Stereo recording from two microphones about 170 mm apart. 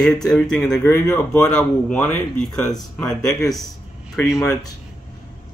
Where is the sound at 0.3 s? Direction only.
5° left (ahead or behind).